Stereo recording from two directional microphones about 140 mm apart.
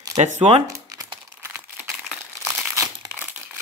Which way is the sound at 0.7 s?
25° right (ahead or behind).